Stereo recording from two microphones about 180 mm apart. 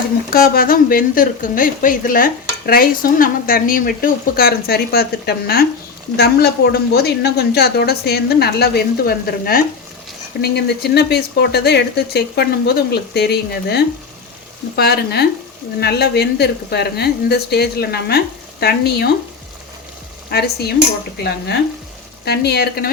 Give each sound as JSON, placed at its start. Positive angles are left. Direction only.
{"t": 0.3, "sound": "a woman's voice", "side_deg": 55}
{"t": 10.4, "sound": "a woman's voice", "side_deg": 65}
{"t": 20.3, "sound": "a woman's voice", "side_deg": 65}
{"t": 21.2, "sound": "stir", "side_deg": 70}
{"t": 22.2, "sound": "a woman's voice", "side_deg": 65}